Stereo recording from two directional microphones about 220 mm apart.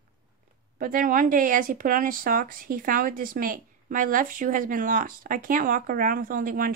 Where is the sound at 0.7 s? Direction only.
40° right (ahead or behind).